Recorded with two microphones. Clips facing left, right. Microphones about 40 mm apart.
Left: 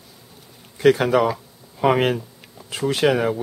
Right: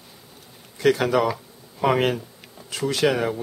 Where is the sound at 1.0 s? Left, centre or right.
Centre.